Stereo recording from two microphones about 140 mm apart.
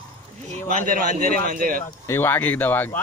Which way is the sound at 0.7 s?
75° right (ahead or behind).